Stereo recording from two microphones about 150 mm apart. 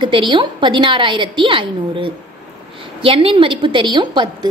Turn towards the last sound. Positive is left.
turn(degrees=-30)  # may be behind; listen again after turning